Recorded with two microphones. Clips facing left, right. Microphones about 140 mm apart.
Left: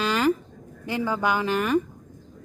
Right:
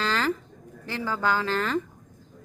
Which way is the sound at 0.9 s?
15° left (ahead or behind).